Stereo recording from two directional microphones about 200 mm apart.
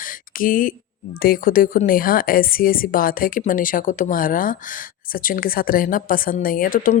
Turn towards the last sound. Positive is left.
turn(degrees=45)  # may be behind; listen again after turning